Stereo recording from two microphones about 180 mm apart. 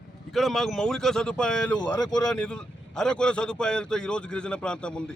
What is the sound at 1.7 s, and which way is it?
Speech, 25° left (ahead or behind).